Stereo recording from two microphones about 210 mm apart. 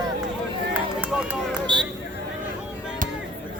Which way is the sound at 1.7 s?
20° right (ahead or behind).